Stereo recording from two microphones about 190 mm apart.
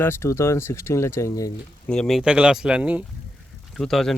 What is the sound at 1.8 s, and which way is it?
Speech, 5° left (ahead or behind).